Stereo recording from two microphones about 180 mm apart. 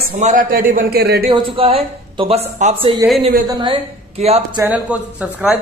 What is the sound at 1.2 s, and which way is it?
A man's voice, 30° right (ahead or behind).